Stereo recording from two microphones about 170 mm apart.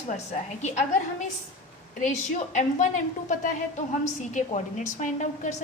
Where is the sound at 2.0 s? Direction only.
50° left (ahead or behind).